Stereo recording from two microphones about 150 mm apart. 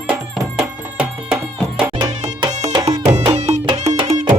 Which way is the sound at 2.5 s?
50° right (ahead or behind).